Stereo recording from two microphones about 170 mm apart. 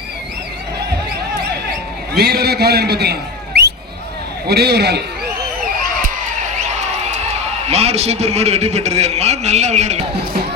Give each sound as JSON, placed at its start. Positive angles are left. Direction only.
{"t": 2.1, "sound": "a man's voice", "side_deg": -70}
{"t": 7.7, "sound": "a man's voice", "side_deg": -35}